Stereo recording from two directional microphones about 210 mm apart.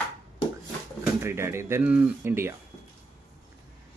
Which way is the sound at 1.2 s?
10° right (ahead or behind).